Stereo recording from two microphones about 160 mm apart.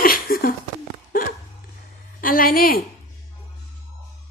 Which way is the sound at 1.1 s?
60° left (ahead or behind).